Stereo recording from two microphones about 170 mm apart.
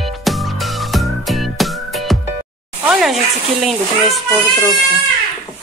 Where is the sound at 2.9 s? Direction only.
Centre (ahead or behind).